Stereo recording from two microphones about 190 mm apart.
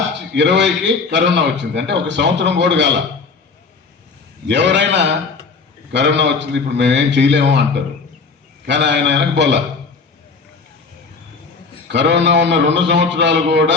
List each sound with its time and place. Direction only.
0.2 s a man's voice: 65° right (ahead or behind)
4.4 s a man's voice: 65° right (ahead or behind)
8.6 s a man's voice: 65° right (ahead or behind)
11.9 s a man's voice: 65° right (ahead or behind)